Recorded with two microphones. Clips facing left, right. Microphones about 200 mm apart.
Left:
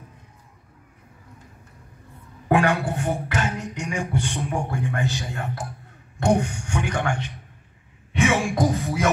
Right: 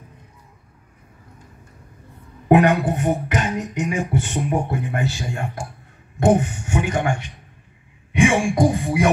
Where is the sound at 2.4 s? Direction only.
20° right (ahead or behind).